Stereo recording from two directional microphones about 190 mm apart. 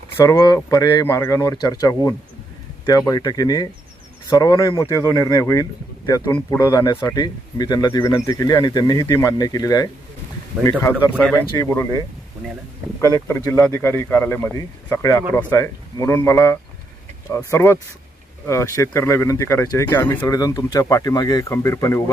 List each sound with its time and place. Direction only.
0.3 s speech: 20° left (ahead or behind)
11.5 s speech: 15° left (ahead or behind)
13.0 s speech: 15° left (ahead or behind)